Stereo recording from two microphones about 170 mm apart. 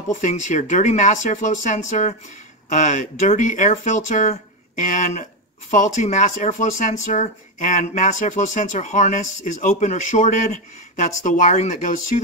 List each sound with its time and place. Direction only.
0.1 s speech: 45° left (ahead or behind)